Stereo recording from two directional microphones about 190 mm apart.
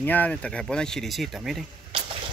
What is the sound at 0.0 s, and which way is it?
Speech, 10° left (ahead or behind).